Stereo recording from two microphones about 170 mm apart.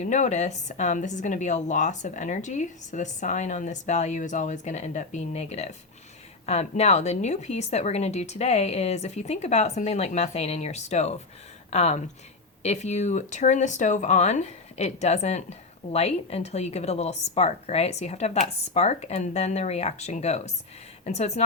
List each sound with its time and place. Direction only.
0.0 s a woman's voice: 45° left (ahead or behind)